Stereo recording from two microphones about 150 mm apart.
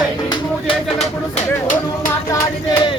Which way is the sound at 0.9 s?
50° left (ahead or behind).